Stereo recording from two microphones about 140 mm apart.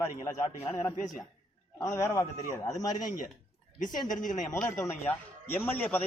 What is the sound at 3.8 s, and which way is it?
Speech, 65° left (ahead or behind).